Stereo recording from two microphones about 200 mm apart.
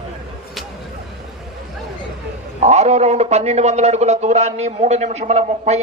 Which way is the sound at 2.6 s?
35° right (ahead or behind).